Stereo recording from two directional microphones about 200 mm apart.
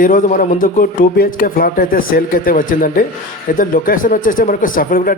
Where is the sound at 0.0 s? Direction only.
45° left (ahead or behind).